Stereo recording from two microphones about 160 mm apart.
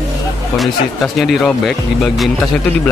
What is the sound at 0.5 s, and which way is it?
Speech, centre (ahead or behind).